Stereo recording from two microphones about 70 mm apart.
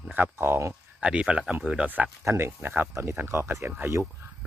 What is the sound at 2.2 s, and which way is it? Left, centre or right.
Speech, right.